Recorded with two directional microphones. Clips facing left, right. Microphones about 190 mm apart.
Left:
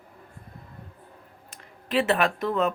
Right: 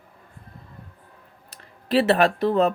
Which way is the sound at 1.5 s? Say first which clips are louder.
Right 5 dB; 35° right (ahead or behind).